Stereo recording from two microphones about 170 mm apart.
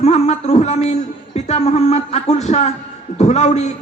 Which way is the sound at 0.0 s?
40° left (ahead or behind).